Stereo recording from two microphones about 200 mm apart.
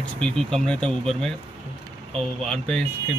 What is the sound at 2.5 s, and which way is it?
Speech, 5° left (ahead or behind).